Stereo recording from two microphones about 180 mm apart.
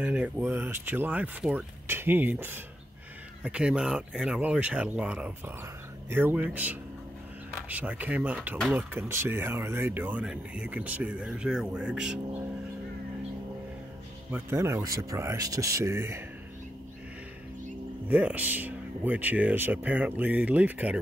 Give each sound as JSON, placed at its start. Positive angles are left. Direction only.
{"t": 0.0, "sound": "speech", "side_deg": -10}
{"t": 14.3, "sound": "speech", "side_deg": -15}
{"t": 18.0, "sound": "speech", "side_deg": -10}